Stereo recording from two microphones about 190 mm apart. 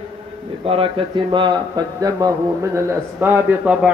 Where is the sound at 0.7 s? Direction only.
25° right (ahead or behind).